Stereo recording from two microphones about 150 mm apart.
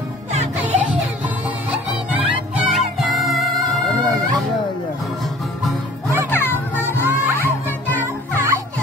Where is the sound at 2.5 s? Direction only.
10° right (ahead or behind).